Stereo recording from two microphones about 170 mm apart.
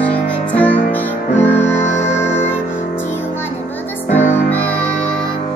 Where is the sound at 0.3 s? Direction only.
10° left (ahead or behind).